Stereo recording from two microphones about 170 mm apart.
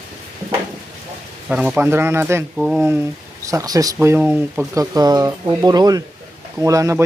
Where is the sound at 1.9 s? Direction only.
15° right (ahead or behind).